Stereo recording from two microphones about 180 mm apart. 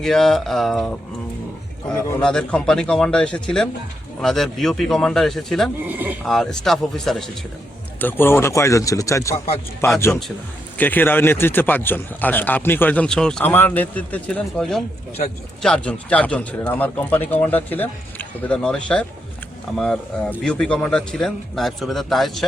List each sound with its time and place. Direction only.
0.0 s speech: centre (ahead or behind)
5.8 s speech: 10° right (ahead or behind)
6.2 s a man's voice: 5° left (ahead or behind)